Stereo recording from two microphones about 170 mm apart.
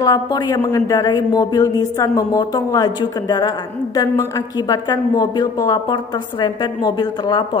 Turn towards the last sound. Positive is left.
turn(degrees=25)  # may be behind; listen again after turning